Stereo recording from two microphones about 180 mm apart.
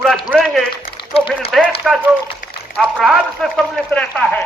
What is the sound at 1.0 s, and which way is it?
Speech, 30° left (ahead or behind).